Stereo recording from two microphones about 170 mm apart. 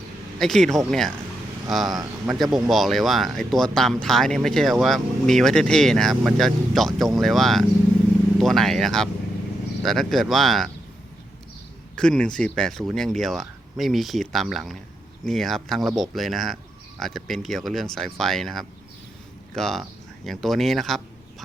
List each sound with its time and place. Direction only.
0.3 s speech: centre (ahead or behind)
2.0 s a man's voice: 15° right (ahead or behind)
2.6 s speech: centre (ahead or behind)
11.9 s speech: 5° left (ahead or behind)